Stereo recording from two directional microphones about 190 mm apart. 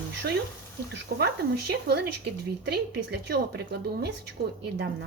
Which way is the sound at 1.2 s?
60° right (ahead or behind).